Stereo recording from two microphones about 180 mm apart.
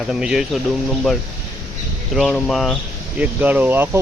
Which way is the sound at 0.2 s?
5° right (ahead or behind).